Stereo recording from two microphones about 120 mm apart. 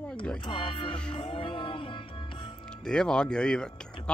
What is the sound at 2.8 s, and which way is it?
Speech, 5° left (ahead or behind).